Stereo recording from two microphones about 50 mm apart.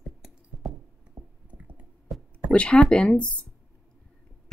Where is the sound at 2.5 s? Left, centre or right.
Centre.